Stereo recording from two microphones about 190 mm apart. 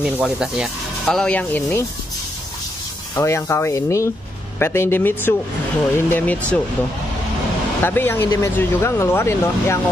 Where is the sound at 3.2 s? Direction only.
15° left (ahead or behind).